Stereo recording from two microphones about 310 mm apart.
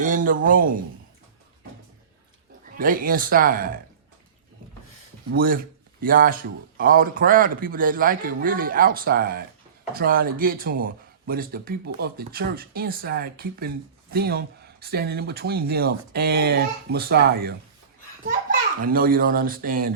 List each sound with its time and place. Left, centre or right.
0.0 s speech: right
2.7 s speech: right
5.3 s speech: right
18.8 s speech: right